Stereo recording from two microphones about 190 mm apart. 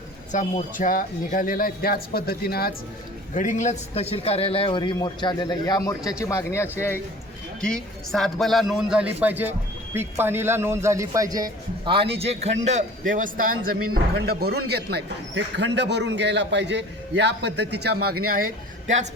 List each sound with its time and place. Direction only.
0.3 s a man's voice: 40° left (ahead or behind)
3.3 s a man's voice: 40° left (ahead or behind); by 18.4 s 50° right (ahead or behind)